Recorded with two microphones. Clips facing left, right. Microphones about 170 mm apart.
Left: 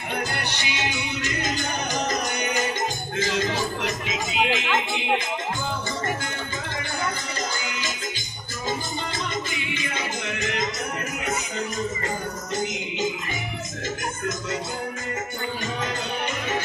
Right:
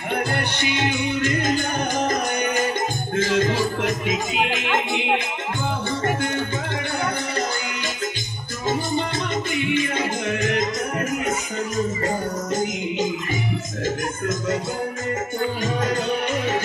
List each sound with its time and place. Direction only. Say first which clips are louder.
0.6 s music: right 6 dB; 55° right (ahead or behind)
9.5 s music: right 9 dB; 55° right (ahead or behind)